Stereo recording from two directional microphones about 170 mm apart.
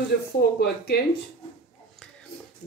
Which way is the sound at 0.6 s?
70° left (ahead or behind).